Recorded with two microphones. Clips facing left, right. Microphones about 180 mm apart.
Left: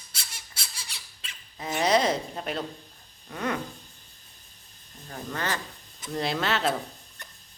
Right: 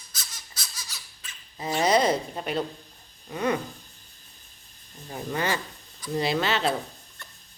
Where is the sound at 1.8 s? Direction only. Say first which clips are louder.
Right 1 dB; centre (ahead or behind).